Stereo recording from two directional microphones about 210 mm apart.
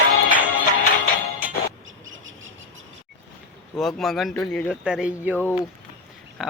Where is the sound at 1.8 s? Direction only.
70° right (ahead or behind).